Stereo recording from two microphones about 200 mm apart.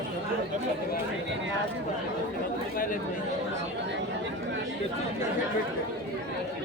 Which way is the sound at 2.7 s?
45° left (ahead or behind).